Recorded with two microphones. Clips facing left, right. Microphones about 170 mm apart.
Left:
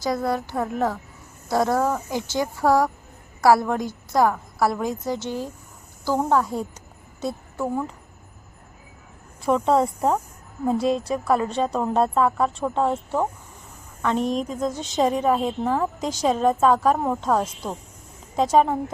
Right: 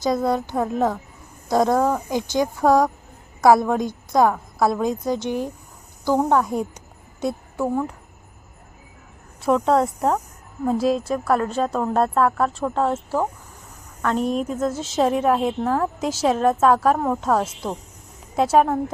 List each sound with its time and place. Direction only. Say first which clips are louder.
0.0 s a woman's voice: right 3 dB; 20° right (ahead or behind)
7.2 s a sound: right 3 dB; 10° right (ahead or behind)
9.4 s a woman's voice: right 1 dB; centre (ahead or behind)